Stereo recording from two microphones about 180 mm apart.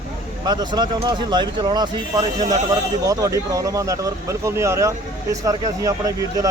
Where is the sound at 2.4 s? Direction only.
45° right (ahead or behind).